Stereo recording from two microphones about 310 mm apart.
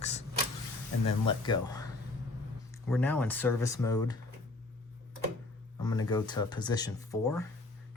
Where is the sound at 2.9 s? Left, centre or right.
Centre.